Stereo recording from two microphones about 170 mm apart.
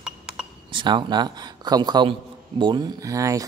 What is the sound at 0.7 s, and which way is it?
A man's voice, 30° right (ahead or behind).